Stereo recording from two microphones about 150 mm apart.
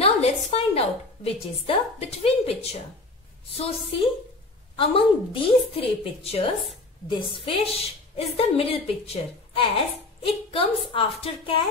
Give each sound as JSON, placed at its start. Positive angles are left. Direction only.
{"t": 0.0, "sound": "a woman's voice", "side_deg": 45}
{"t": 10.2, "sound": "a woman's voice", "side_deg": 35}